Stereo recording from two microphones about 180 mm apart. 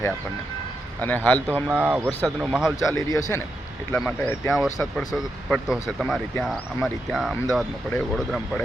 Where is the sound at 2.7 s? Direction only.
15° left (ahead or behind); by 8.6 s centre (ahead or behind).